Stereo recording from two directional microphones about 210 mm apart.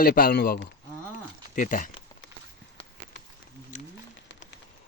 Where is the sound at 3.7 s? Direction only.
35° left (ahead or behind).